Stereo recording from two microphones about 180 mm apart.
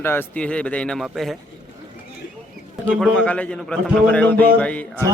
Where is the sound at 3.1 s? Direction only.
5° left (ahead or behind).